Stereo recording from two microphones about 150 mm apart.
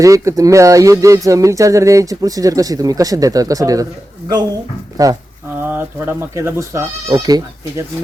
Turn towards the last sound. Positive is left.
turn(degrees=-25)  # may be behind; listen again after turning